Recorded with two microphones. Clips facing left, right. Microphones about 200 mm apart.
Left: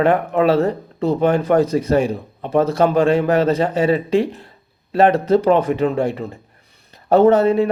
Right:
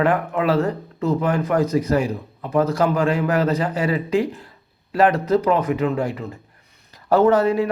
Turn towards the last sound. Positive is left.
turn(degrees=25)  # may be behind; listen again after turning